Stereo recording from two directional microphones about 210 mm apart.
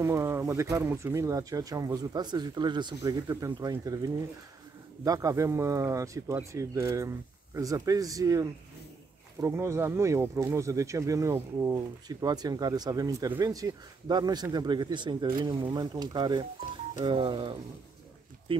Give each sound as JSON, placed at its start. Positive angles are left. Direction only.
{"t": 0.0, "sound": "speech", "side_deg": -10}